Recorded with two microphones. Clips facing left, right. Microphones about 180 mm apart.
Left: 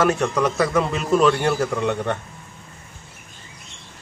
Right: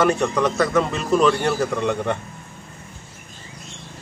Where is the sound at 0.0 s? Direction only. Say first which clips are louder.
Right 1 dB; 5° left (ahead or behind).